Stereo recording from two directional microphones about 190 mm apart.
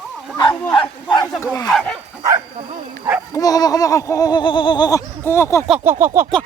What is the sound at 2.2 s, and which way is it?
Speech, 20° right (ahead or behind).